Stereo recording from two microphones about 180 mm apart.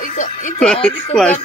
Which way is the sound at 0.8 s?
5° left (ahead or behind).